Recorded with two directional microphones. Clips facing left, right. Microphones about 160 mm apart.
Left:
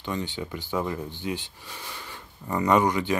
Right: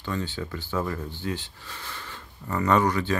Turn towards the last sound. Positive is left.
turn(degrees=15)  # may be behind; listen again after turning